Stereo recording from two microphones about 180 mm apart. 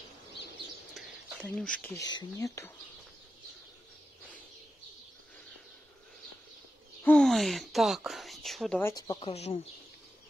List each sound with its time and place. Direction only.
0.9 s rodents: 5° left (ahead or behind)
2.0 s speech: 20° left (ahead or behind)
7.0 s a sound: 5° left (ahead or behind)
8.8 s speech: 20° left (ahead or behind)
9.3 s speech: 35° left (ahead or behind)